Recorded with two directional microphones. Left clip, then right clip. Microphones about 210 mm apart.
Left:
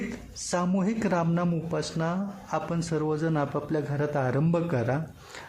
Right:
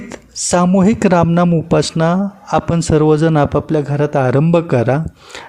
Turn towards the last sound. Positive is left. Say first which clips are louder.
# right 11 dB
turn(degrees=-40)  # may be behind; listen again after turning